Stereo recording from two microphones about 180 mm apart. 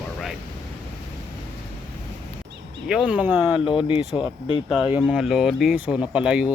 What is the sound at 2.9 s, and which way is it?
Speech, 5° right (ahead or behind).